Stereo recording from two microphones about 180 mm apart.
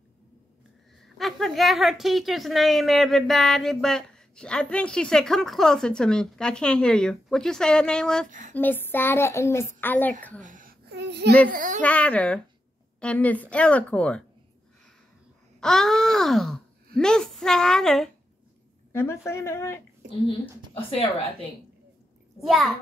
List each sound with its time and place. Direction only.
1.0 s a woman's voice: centre (ahead or behind)
8.3 s speech: 45° right (ahead or behind)
8.5 s child singing: 10° left (ahead or behind)
10.4 s babbling: 50° right (ahead or behind); by 11.3 s 70° right (ahead or behind)
11.4 s a child's voice: 50° right (ahead or behind)
11.8 s child singing: 5° left (ahead or behind)
15.6 s a woman's voice: centre (ahead or behind)
18.9 s child singing: 15° left (ahead or behind)
20.2 s a woman's voice: 30° left (ahead or behind)
22.4 s a woman's voice: centre (ahead or behind)